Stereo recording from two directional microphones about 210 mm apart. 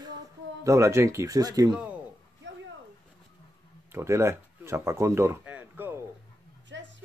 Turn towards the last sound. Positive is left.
turn(degrees=-60)  # may be behind; listen again after turning